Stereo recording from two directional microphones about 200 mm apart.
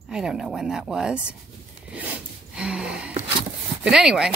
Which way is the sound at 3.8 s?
5° right (ahead or behind).